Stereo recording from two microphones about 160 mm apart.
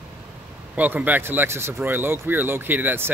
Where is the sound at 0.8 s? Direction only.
10° right (ahead or behind).